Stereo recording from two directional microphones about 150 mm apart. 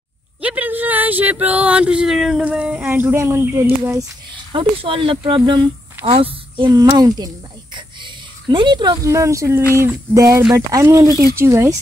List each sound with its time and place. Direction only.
0.4 s speech: 10° right (ahead or behind)
4.5 s a woman's voice: 35° right (ahead or behind)
7.0 s speech: 25° right (ahead or behind)